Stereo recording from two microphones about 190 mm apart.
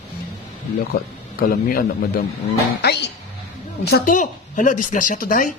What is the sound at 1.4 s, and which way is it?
Speech, 50° left (ahead or behind).